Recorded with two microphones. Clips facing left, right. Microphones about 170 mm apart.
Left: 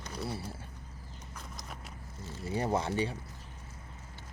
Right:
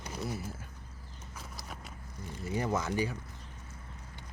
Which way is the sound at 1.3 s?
Centre (ahead or behind).